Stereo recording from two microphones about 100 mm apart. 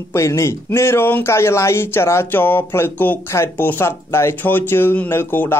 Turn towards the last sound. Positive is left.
turn(degrees=20)  # may be behind; listen again after turning